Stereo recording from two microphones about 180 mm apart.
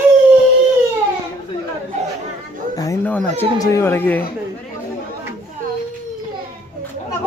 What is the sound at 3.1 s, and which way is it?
Speech, 10° left (ahead or behind).